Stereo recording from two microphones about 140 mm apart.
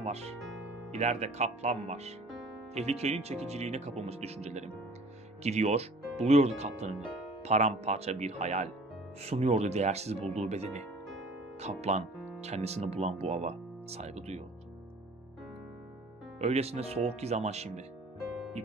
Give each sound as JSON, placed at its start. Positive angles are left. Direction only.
{"t": 0.0, "sound": "speech", "side_deg": -50}
{"t": 16.3, "sound": "speech", "side_deg": -50}